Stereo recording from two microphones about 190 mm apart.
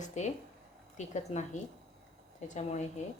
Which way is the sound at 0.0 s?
40° left (ahead or behind).